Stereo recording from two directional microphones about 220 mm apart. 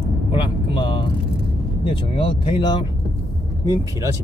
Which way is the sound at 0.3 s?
20° left (ahead or behind).